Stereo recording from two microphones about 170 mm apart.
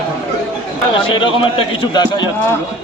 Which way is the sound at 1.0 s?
30° left (ahead or behind).